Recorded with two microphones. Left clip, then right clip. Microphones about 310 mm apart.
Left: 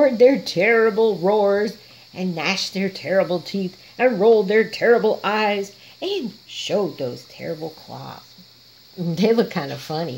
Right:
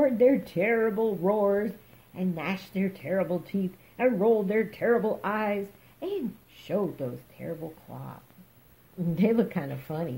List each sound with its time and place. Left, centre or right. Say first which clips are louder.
0.0 s speech: left 8 dB; left
9.1 s speech: left 8 dB; left